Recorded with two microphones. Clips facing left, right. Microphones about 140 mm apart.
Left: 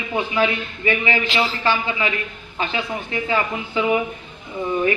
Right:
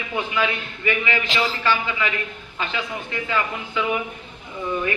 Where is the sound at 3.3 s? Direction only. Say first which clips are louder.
Left 3 dB; 35° left (ahead or behind).